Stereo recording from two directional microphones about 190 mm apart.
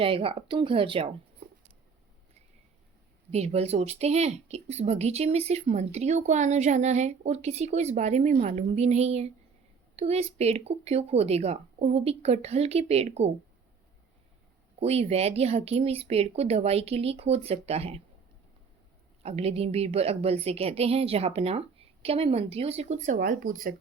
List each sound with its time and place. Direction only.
0.0 s speech: 30° right (ahead or behind)
3.3 s speech: 35° right (ahead or behind)
14.8 s speech: 35° right (ahead or behind)
19.2 s speech: 35° right (ahead or behind)